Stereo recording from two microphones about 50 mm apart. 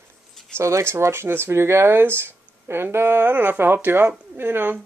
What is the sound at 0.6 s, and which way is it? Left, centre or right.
Speech, right.